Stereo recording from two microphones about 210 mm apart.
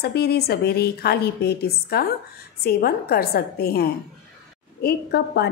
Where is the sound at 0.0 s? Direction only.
50° left (ahead or behind).